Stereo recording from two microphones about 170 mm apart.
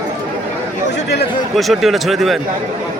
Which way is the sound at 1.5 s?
Centre (ahead or behind).